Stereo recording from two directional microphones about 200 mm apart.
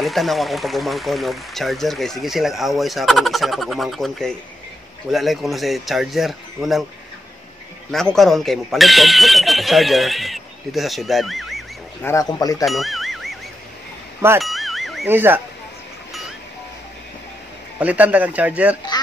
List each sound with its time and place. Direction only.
0.0 s speech: centre (ahead or behind)
7.9 s speech: centre (ahead or behind)
12.0 s speech: 15° left (ahead or behind)
12.6 s a sound: centre (ahead or behind)
14.4 s a sound: centre (ahead or behind)
15.0 s speech: 10° right (ahead or behind)
17.7 s speech: 5° right (ahead or behind)